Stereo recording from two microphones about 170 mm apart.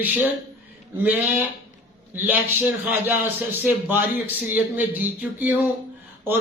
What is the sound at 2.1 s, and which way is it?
A man's voice, 10° right (ahead or behind).